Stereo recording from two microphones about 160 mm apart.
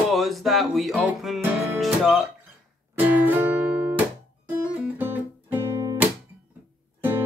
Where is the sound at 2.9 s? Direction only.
10° right (ahead or behind).